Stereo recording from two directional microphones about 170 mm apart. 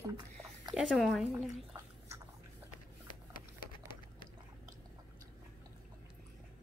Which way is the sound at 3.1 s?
55° left (ahead or behind).